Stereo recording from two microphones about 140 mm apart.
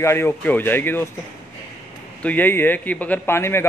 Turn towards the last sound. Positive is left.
turn(degrees=15)  # may be behind; listen again after turning